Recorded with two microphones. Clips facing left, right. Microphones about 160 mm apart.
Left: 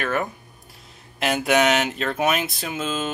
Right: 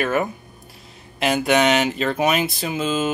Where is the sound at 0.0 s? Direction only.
5° right (ahead or behind).